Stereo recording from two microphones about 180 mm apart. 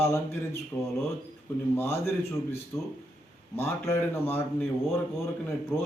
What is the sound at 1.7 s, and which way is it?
Speech, 10° left (ahead or behind).